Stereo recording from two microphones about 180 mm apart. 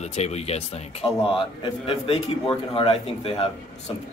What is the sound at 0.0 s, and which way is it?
A man's voice, 35° left (ahead or behind).